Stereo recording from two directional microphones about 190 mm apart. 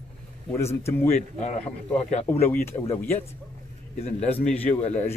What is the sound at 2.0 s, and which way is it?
Speech, 35° left (ahead or behind).